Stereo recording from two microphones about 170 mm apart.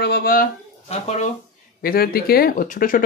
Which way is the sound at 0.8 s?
40° left (ahead or behind).